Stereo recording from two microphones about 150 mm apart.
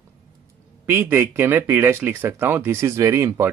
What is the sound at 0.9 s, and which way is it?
Speech, 15° right (ahead or behind).